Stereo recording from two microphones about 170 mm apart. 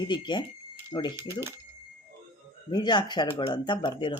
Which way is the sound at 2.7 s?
25° left (ahead or behind).